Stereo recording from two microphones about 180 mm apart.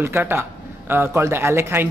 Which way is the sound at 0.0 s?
15° right (ahead or behind).